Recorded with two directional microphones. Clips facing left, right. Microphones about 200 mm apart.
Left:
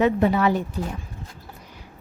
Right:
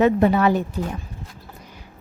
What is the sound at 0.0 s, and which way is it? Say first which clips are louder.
Speech: right 3 dB; 50° right (ahead or behind).